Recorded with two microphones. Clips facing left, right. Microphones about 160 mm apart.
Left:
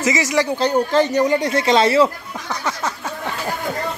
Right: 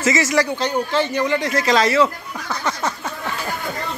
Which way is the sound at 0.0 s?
15° left (ahead or behind).